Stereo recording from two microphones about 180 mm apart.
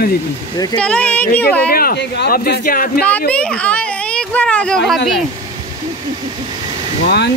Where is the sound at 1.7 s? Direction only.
55° left (ahead or behind).